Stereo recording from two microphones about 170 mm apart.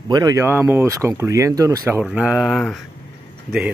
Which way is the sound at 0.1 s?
20° right (ahead or behind).